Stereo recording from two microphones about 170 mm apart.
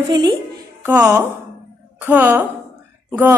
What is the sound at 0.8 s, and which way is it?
A woman's voice, 10° right (ahead or behind).